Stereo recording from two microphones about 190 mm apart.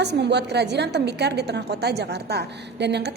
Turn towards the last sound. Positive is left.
turn(degrees=-60)  # may be behind; listen again after turning